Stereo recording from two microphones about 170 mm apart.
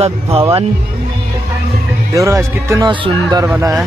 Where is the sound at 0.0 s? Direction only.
35° right (ahead or behind).